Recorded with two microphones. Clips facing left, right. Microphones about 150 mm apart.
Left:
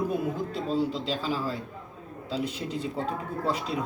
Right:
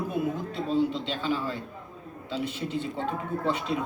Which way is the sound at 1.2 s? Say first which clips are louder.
Right 4 dB; 5° left (ahead or behind).